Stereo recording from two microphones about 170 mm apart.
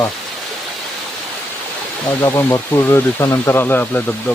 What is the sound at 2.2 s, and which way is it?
Speech, 15° left (ahead or behind).